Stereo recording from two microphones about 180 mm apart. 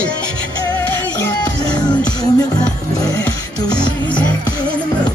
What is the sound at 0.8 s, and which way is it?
Music, 10° left (ahead or behind).